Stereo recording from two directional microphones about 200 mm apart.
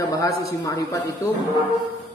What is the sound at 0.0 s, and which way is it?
Speech, 20° left (ahead or behind).